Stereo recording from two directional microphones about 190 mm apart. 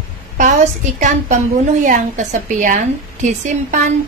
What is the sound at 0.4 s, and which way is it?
A woman's voice, 40° right (ahead or behind).